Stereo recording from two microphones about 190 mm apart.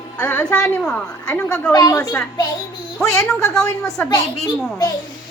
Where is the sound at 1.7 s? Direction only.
20° left (ahead or behind).